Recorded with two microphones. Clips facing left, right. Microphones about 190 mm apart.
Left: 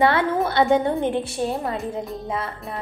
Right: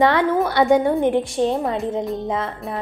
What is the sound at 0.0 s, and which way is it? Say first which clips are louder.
A woman's voice: right 2 dB; 15° right (ahead or behind).